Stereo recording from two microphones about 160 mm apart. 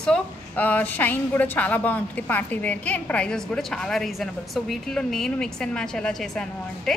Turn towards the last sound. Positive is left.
turn(degrees=5)  # may be behind; listen again after turning